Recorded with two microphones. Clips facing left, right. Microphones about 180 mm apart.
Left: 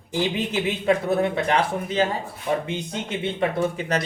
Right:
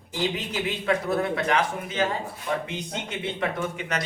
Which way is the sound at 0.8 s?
20° left (ahead or behind).